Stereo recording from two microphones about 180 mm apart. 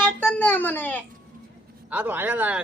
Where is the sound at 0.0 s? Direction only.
10° left (ahead or behind).